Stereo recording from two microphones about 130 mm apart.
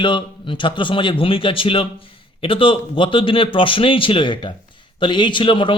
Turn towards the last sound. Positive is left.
turn(degrees=40)  # may be behind; listen again after turning